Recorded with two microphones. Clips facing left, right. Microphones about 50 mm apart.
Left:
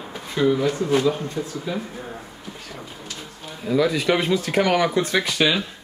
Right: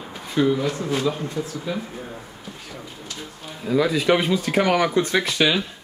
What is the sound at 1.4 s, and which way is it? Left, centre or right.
Speech, centre.